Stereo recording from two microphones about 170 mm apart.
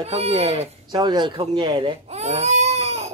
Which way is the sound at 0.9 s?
25° right (ahead or behind).